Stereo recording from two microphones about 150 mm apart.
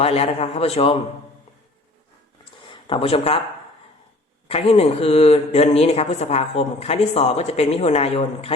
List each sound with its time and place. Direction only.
0.0 s speech: 40° left (ahead or behind)
2.4 s a sound: 35° left (ahead or behind)
4.4 s speech: 40° left (ahead or behind)